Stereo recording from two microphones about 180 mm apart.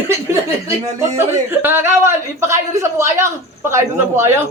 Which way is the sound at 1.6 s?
10° right (ahead or behind).